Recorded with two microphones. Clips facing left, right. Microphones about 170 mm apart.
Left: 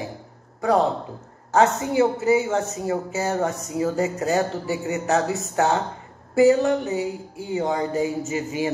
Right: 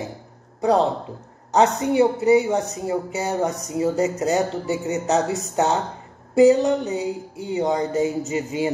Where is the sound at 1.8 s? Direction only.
20° right (ahead or behind).